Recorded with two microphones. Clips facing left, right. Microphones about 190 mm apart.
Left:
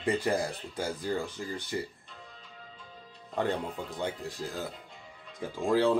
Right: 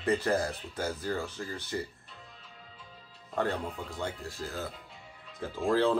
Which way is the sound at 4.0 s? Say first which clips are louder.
Left 3 dB; 15° left (ahead or behind).